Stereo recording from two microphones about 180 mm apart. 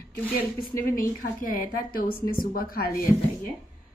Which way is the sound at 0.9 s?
50° left (ahead or behind).